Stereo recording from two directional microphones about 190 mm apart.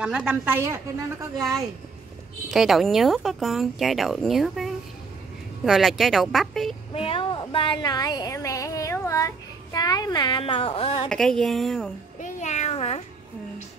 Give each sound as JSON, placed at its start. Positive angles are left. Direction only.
{"t": 0.0, "sound": "a woman's voice", "side_deg": -5}
{"t": 2.5, "sound": "speech", "side_deg": 0}
{"t": 6.9, "sound": "a woman's voice", "side_deg": 30}
{"t": 11.1, "sound": "speech", "side_deg": 5}
{"t": 12.2, "sound": "a sound", "side_deg": 40}